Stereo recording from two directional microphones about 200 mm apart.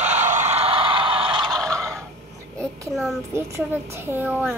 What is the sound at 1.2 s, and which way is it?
Neigh, 20° right (ahead or behind).